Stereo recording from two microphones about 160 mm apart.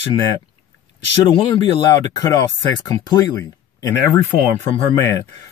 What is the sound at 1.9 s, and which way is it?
Speech, 20° left (ahead or behind).